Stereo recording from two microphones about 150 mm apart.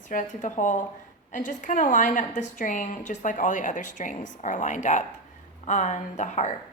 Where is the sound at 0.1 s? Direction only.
55° left (ahead or behind).